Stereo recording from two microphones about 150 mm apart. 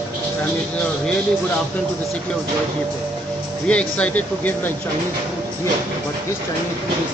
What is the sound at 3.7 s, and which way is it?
Speech, 10° left (ahead or behind).